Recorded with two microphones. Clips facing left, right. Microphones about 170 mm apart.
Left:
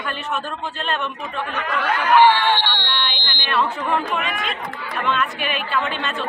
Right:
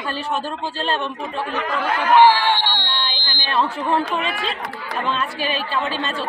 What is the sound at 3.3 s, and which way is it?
A woman's voice, 35° right (ahead or behind).